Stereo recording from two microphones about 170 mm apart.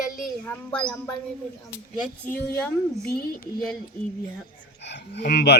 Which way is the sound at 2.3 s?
10° left (ahead or behind).